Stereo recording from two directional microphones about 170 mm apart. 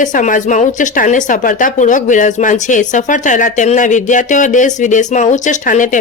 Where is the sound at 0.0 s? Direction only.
50° left (ahead or behind).